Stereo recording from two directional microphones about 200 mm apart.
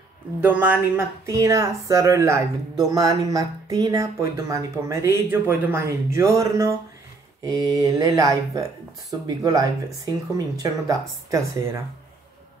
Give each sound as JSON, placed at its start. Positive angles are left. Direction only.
{"t": 0.4, "sound": "speech", "side_deg": -10}